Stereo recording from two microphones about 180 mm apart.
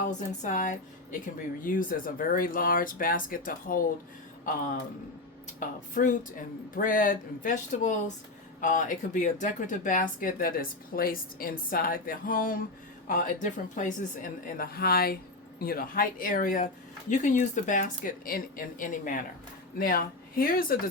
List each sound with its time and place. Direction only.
0.1 s speech: 45° left (ahead or behind)
5.5 s speech: 45° left (ahead or behind)